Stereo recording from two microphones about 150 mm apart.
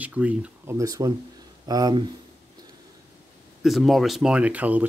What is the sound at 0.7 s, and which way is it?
Speech, 25° right (ahead or behind).